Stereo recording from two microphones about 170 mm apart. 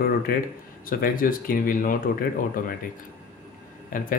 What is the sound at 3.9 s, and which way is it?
Speech, 55° left (ahead or behind).